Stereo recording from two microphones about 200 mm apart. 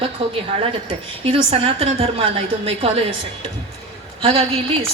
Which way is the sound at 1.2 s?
25° right (ahead or behind).